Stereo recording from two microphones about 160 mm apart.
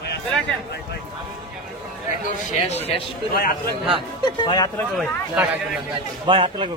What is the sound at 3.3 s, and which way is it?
Speech, 65° left (ahead or behind).